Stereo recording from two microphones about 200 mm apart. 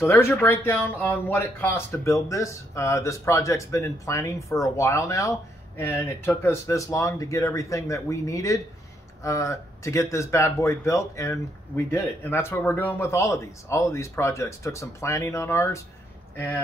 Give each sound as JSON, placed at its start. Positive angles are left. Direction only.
{"t": 0.0, "sound": "speech", "side_deg": 15}